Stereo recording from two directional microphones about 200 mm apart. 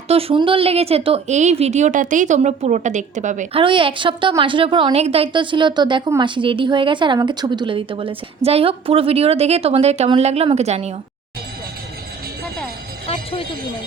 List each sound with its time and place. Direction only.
0.1 s speech: 30° right (ahead or behind)
3.6 s a woman's voice: 25° right (ahead or behind)